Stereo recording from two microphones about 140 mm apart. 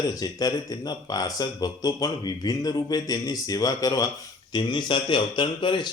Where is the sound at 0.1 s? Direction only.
25° left (ahead or behind).